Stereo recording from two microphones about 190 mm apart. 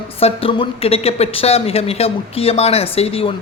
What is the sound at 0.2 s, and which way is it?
Speech, 30° left (ahead or behind).